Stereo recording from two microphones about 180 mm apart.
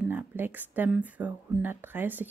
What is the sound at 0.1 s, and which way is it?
Speech, 10° right (ahead or behind).